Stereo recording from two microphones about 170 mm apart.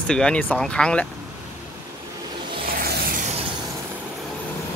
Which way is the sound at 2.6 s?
60° right (ahead or behind).